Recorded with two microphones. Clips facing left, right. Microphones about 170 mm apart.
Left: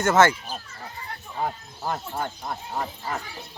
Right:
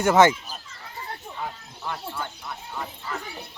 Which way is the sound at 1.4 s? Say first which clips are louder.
Left 9 dB; 40° left (ahead or behind).